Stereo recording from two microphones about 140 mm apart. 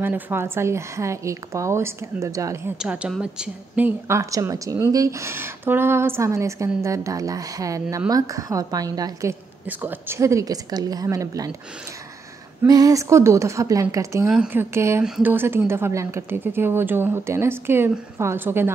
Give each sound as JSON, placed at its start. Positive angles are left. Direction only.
{"t": 0.0, "sound": "a woman's voice", "side_deg": -15}
{"t": 2.8, "sound": "a woman's voice", "side_deg": -5}
{"t": 12.6, "sound": "a woman's voice", "side_deg": -25}
{"t": 14.3, "sound": "a woman's voice", "side_deg": -10}
{"t": 15.0, "sound": "speech", "side_deg": -5}
{"t": 15.3, "sound": "a woman's voice", "side_deg": -15}